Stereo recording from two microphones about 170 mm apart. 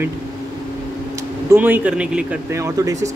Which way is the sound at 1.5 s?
10° right (ahead or behind).